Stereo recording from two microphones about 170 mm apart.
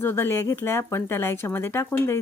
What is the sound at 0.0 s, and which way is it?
Speech, 15° left (ahead or behind).